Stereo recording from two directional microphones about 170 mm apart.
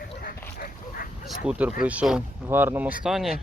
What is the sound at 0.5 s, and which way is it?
Dog, 65° left (ahead or behind).